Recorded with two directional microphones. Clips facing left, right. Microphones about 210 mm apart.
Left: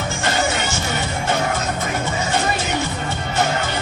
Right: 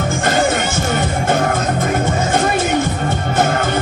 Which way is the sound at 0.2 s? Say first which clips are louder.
Right 5 dB; 50° right (ahead or behind).